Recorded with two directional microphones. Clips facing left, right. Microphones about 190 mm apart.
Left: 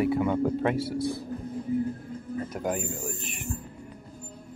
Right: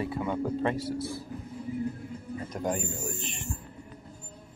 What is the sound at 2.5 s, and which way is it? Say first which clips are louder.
Speech: even; 5° left (ahead or behind).